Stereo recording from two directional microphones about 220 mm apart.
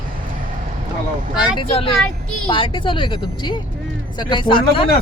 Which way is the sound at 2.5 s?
25° left (ahead or behind).